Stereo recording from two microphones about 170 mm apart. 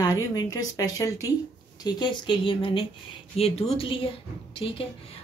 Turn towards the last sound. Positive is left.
turn(degrees=30)  # may be behind; listen again after turning